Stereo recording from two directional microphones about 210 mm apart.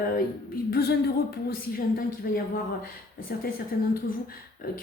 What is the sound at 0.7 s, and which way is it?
Speech, 50° left (ahead or behind).